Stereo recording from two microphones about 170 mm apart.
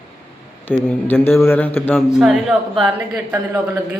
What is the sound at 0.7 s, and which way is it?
A man's voice, 10° left (ahead or behind).